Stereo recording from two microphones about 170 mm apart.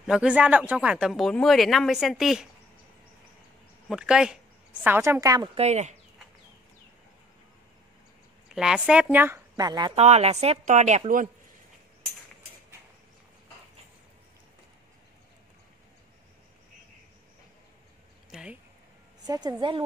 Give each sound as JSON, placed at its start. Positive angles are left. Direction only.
{"t": 0.0, "sound": "speech", "side_deg": -5}
{"t": 3.9, "sound": "a woman's voice", "side_deg": -5}
{"t": 5.6, "sound": "a woman's voice", "side_deg": -40}
{"t": 8.5, "sound": "speech", "side_deg": -5}
{"t": 9.6, "sound": "a woman's voice", "side_deg": -25}
{"t": 9.9, "sound": "a woman's voice", "side_deg": -40}
{"t": 18.3, "sound": "a sound", "side_deg": -5}
{"t": 19.2, "sound": "a woman's voice", "side_deg": -25}